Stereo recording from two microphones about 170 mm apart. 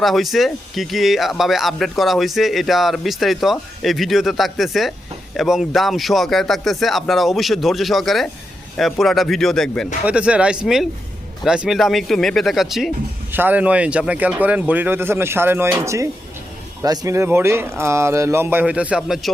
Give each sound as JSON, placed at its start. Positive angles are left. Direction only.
{"t": 0.0, "sound": "speech", "side_deg": 0}